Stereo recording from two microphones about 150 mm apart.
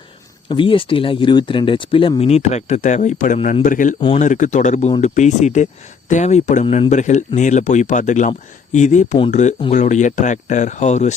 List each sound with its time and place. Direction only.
0.4 s speech: 35° left (ahead or behind); by 11.1 s 50° left (ahead or behind)